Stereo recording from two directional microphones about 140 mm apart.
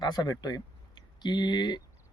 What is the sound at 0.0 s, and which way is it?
Speech, 30° left (ahead or behind).